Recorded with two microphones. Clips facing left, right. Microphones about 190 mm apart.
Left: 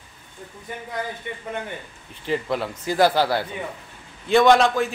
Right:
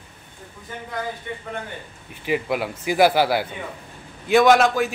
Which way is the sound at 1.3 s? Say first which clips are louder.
Right 1 dB; 15° left (ahead or behind).